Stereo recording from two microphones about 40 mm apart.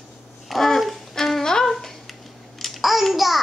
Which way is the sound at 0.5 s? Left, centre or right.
Centre.